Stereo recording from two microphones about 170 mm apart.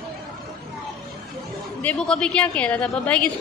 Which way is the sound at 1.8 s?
5° left (ahead or behind).